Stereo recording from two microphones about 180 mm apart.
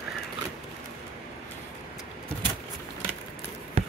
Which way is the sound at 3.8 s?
35° right (ahead or behind).